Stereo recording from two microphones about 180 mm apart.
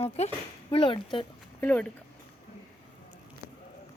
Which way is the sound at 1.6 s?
10° left (ahead or behind).